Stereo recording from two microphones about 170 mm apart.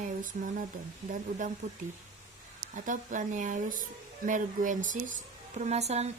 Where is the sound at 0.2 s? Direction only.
50° right (ahead or behind).